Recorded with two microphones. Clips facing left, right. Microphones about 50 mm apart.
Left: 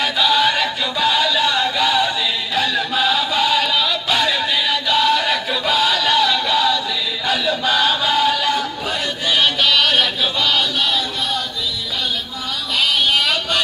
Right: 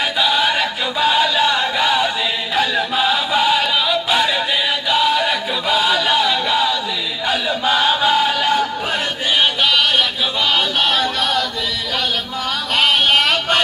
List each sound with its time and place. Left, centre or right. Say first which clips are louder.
0.2 s choir: left 1 dB; centre
2.5 s chant: right 2 dB; centre
4.8 s a sound: even; centre
9.4 s chant: even; centre
10.8 s music: right 3 dB; right
12.7 s a sound: right 3 dB; right